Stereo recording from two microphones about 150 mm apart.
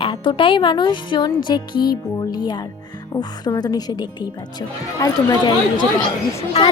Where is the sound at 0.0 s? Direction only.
35° left (ahead or behind).